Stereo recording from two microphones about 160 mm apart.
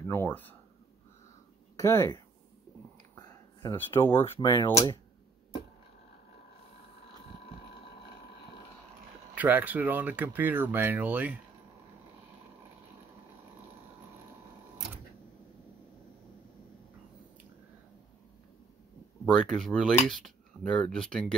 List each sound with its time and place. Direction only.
0.1 s speech: 15° left (ahead or behind)
1.8 s speech: 15° left (ahead or behind)
3.2 s a sound: 15° left (ahead or behind)
4.2 s speech: 20° left (ahead or behind)
9.3 s speech: 10° right (ahead or behind)
19.2 s speech: 5° left (ahead or behind)